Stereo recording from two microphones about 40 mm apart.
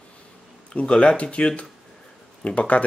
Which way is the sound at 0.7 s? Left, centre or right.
Left.